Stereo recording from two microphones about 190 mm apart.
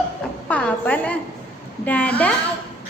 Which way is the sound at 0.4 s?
5° left (ahead or behind).